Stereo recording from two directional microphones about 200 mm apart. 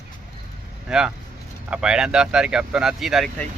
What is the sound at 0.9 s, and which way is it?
Speech, 5° right (ahead or behind).